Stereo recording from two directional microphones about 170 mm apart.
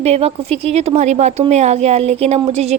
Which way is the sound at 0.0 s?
35° right (ahead or behind).